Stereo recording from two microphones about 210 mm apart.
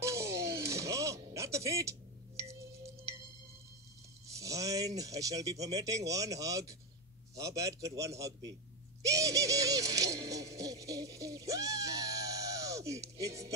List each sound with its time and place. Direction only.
0.0 s music: 15° right (ahead or behind)
4.4 s a man's voice: 15° right (ahead or behind)
9.0 s music: 15° right (ahead or behind)